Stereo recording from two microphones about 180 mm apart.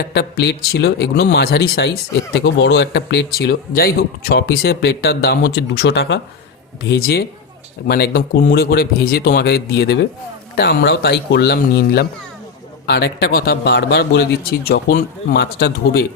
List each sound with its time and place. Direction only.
0.0 s speech: 65° left (ahead or behind)
2.3 s speech: 75° left (ahead or behind)
6.8 s speech: 65° left (ahead or behind)